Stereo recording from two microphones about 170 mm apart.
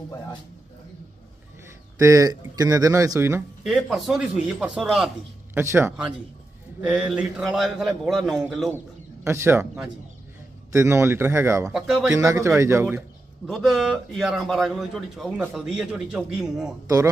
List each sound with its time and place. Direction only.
2.0 s speech: 20° right (ahead or behind)
3.7 s a man's voice: centre (ahead or behind)
5.6 s a man's voice: 15° right (ahead or behind)
8.7 s a man's voice: 15° right (ahead or behind)
13.5 s a man's voice: centre (ahead or behind)
16.8 s speech: 20° right (ahead or behind)